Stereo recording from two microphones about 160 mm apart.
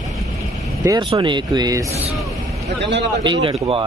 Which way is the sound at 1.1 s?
30° right (ahead or behind).